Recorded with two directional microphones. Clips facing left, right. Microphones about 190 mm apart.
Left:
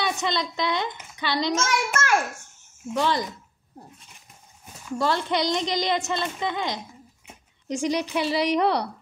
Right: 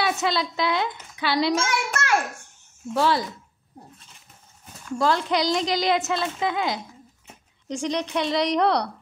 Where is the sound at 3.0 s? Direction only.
5° right (ahead or behind).